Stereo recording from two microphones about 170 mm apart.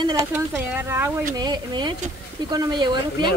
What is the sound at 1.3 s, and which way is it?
Speech, 25° right (ahead or behind).